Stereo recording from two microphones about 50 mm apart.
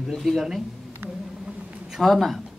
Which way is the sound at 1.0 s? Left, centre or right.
Right.